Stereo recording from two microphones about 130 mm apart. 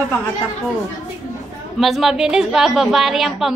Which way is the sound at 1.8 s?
Centre (ahead or behind).